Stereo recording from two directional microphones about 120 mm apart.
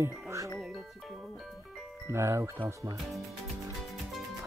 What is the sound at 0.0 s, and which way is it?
Speech, 25° right (ahead or behind).